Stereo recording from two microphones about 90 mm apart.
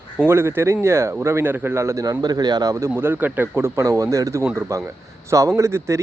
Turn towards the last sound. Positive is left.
turn(degrees=-35)  # may be behind; listen again after turning